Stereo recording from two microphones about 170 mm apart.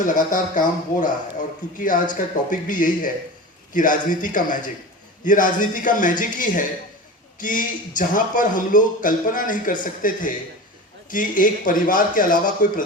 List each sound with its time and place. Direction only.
0.0 s a man's voice: 50° left (ahead or behind)
2.1 s a man's voice: 50° left (ahead or behind)